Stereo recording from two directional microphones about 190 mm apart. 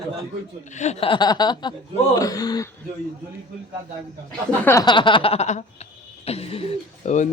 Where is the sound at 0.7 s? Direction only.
35° left (ahead or behind); by 2.7 s 20° left (ahead or behind).